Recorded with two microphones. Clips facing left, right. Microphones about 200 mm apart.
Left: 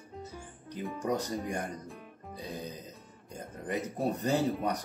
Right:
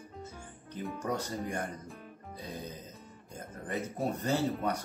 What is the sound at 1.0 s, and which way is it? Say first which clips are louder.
Speech: left 3 dB; 15° left (ahead or behind).